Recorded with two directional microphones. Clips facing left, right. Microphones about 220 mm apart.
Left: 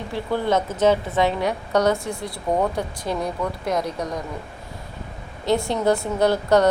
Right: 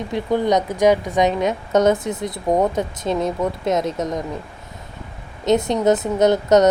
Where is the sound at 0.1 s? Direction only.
15° right (ahead or behind).